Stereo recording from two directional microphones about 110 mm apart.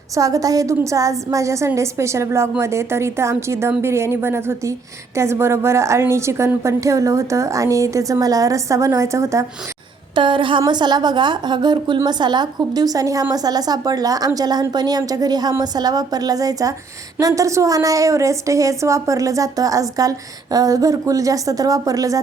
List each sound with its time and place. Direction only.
0.1 s a woman's voice: 30° right (ahead or behind)
10.2 s a woman's voice: 50° right (ahead or behind); by 22.2 s 30° right (ahead or behind)